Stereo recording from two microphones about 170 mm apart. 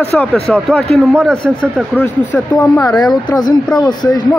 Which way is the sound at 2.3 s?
10° left (ahead or behind).